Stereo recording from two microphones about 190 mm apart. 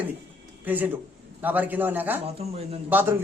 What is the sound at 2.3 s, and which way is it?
Speech, 35° right (ahead or behind).